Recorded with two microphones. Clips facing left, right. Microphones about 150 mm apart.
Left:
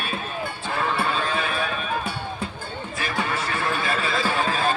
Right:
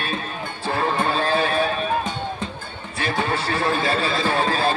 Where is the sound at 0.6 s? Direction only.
35° right (ahead or behind).